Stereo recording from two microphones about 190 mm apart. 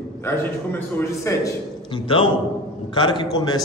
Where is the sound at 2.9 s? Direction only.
25° left (ahead or behind).